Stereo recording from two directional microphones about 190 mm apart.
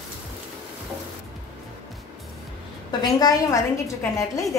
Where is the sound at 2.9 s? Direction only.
20° left (ahead or behind).